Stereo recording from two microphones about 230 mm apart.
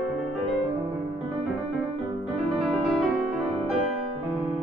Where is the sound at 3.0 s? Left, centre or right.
Centre.